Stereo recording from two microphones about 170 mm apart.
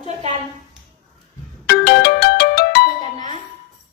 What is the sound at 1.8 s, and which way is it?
Ringtone, 70° left (ahead or behind).